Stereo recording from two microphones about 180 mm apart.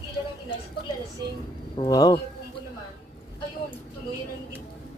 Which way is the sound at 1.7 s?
25° left (ahead or behind).